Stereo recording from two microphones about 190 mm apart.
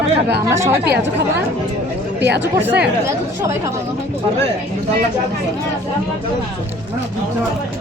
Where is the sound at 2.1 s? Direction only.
65° right (ahead or behind).